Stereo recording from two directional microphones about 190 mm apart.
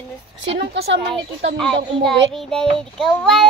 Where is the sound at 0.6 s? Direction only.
60° right (ahead or behind).